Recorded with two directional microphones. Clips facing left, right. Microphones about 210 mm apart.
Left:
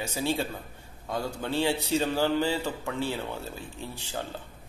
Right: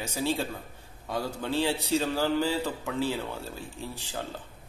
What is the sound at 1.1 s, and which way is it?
A man's voice, centre (ahead or behind).